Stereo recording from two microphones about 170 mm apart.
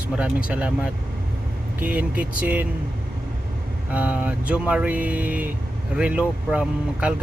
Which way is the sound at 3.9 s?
10° right (ahead or behind).